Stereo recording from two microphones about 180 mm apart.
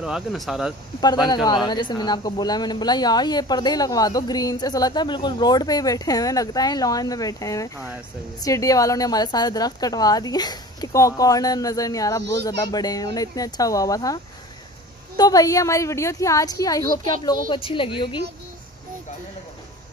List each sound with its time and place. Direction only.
0.0 s speech: centre (ahead or behind)
1.3 s speech: 25° left (ahead or behind)